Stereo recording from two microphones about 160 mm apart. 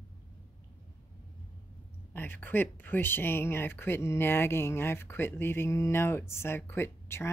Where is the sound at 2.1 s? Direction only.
10° left (ahead or behind).